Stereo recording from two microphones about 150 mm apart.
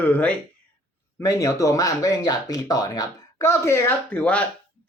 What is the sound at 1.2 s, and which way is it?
A woman's voice, 20° left (ahead or behind).